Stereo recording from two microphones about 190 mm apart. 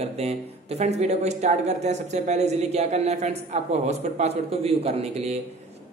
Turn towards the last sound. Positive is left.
turn(degrees=-35)  # may be behind; listen again after turning